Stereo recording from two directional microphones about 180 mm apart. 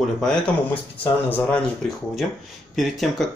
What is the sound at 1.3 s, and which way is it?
Speech, 10° left (ahead or behind).